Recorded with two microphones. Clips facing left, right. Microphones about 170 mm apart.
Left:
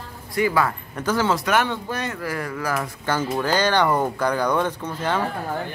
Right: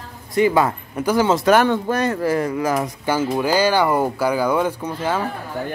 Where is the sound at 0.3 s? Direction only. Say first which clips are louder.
Right 5 dB; 20° right (ahead or behind).